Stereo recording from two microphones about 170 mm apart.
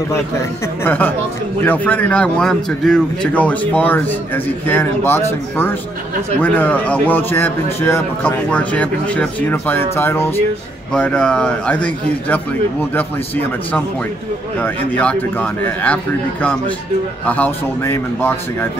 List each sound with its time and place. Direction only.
0.1 s a man's voice: 15° left (ahead or behind)
14.6 s a man's voice: 10° left (ahead or behind)